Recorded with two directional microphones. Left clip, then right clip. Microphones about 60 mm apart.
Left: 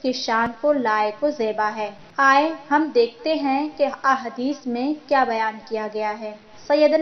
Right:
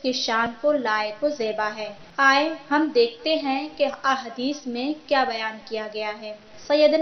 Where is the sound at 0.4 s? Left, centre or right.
Left.